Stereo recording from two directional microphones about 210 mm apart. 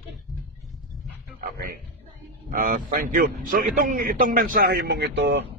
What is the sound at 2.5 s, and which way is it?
A man's voice, 40° right (ahead or behind).